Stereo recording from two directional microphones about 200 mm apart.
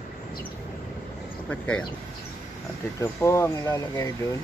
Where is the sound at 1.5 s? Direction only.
5° left (ahead or behind).